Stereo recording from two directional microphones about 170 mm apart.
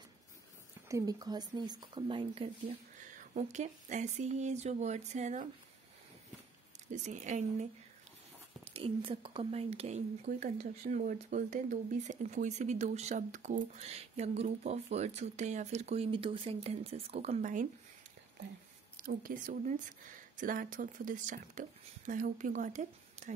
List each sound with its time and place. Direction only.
0.8 s speech: 20° right (ahead or behind)
3.0 s speech: 45° right (ahead or behind)
6.9 s speech: 45° right (ahead or behind)
8.6 s speech: 35° right (ahead or behind)
18.9 s speech: 55° right (ahead or behind)